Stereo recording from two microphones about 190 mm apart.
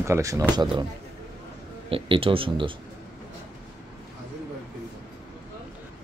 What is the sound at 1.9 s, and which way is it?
Speech, 30° right (ahead or behind).